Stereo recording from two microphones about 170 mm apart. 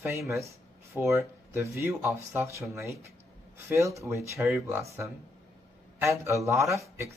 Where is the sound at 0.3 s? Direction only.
15° right (ahead or behind).